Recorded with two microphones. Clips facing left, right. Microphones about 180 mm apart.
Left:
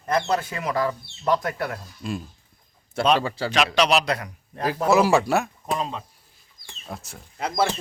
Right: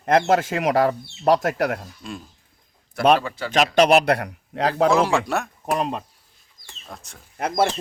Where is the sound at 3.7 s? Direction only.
50° right (ahead or behind); by 4.9 s 75° right (ahead or behind).